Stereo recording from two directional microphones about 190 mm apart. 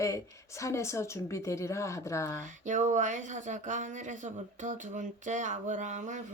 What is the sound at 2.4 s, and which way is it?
Speech, 40° right (ahead or behind).